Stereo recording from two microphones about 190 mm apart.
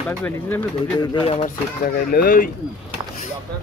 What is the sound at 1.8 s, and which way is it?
Speech, 50° left (ahead or behind).